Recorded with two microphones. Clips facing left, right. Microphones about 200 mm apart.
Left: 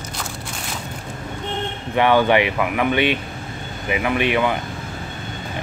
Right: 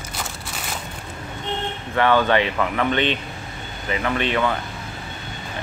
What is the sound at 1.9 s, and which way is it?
Speech, 15° left (ahead or behind).